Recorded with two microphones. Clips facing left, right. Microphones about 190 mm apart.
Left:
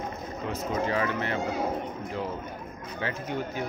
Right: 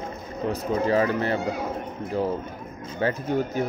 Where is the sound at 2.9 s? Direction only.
40° right (ahead or behind).